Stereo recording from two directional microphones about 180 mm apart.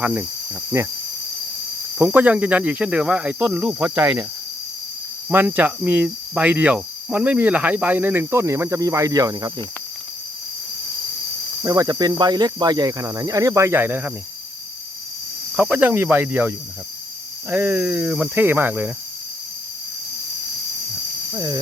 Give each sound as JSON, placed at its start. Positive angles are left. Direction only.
{"t": 0.0, "sound": "cricket", "side_deg": -10}
{"t": 2.0, "sound": "cricket", "side_deg": -10}
{"t": 5.3, "sound": "cricket", "side_deg": -10}
{"t": 11.6, "sound": "speech", "side_deg": -20}
{"t": 15.5, "sound": "cricket", "side_deg": -10}
{"t": 21.3, "sound": "speech", "side_deg": -20}